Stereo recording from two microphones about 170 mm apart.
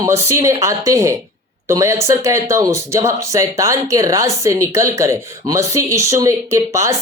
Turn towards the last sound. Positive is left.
turn(degrees=-15)  # may be behind; listen again after turning